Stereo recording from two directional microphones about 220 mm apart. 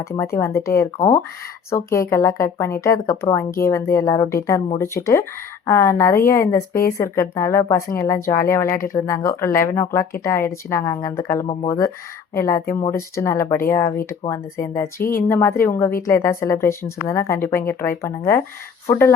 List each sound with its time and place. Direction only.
0.3 s speech: 10° left (ahead or behind)